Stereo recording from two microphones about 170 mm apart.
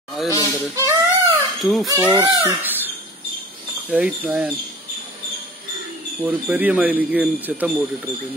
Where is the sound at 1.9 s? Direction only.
20° right (ahead or behind).